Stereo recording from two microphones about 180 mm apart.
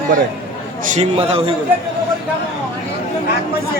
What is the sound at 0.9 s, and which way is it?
Speech, 35° right (ahead or behind).